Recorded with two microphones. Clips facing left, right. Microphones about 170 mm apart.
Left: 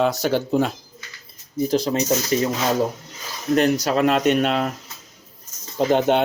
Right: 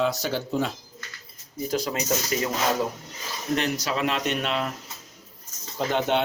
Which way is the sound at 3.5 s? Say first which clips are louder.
Left 8 dB; 45° left (ahead or behind).